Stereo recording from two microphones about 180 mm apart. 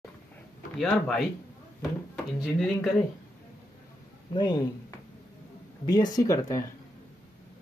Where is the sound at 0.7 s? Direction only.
Centre (ahead or behind).